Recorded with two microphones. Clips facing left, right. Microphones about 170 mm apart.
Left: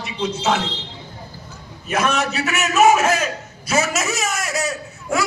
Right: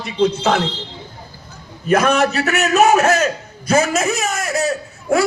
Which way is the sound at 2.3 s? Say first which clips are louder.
Right 4 dB; 40° right (ahead or behind).